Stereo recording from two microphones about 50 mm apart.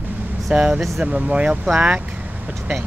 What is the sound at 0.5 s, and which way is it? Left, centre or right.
Speech, right.